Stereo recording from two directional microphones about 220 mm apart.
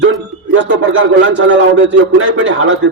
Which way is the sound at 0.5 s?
60° right (ahead or behind).